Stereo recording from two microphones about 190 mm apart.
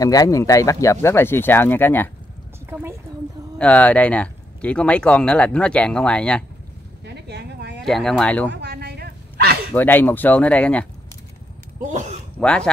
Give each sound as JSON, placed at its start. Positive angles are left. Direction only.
{"t": 0.0, "sound": "speech", "side_deg": 20}
{"t": 2.7, "sound": "a woman's voice", "side_deg": -10}
{"t": 3.5, "sound": "speech", "side_deg": 5}
{"t": 7.1, "sound": "a sound", "side_deg": -60}
{"t": 7.8, "sound": "speech", "side_deg": 0}
{"t": 8.5, "sound": "dog", "side_deg": -65}
{"t": 9.8, "sound": "speech", "side_deg": 10}
{"t": 11.8, "sound": "speech", "side_deg": -40}
{"t": 12.4, "sound": "speech", "side_deg": 5}